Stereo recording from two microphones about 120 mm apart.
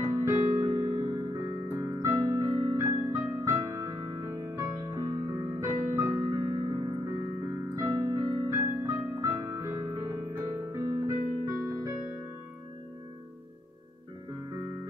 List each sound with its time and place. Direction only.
0.0 s electric piano: 25° right (ahead or behind)
1.3 s keyboard: 25° right (ahead or behind)
6.4 s keyboard: 40° right (ahead or behind)
7.7 s music: 25° right (ahead or behind)
10.7 s keyboard: 20° right (ahead or behind)